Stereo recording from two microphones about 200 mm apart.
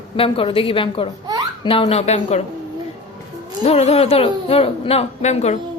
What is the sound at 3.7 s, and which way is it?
A woman's voice, 30° left (ahead or behind).